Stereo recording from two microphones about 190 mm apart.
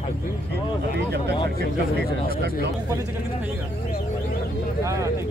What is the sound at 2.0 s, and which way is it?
Speech, 55° left (ahead or behind).